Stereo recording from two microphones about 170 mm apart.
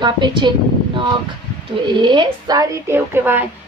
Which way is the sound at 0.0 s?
25° right (ahead or behind).